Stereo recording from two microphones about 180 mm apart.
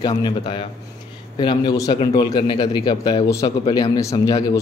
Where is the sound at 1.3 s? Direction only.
25° left (ahead or behind).